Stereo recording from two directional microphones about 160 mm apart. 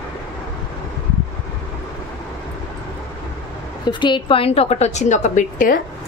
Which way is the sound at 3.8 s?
30° left (ahead or behind).